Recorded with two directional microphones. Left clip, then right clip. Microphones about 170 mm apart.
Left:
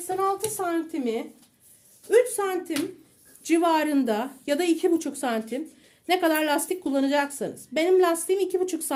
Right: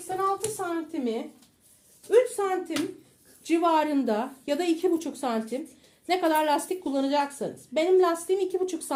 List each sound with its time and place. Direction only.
0.2 s a woman's voice: 50° left (ahead or behind)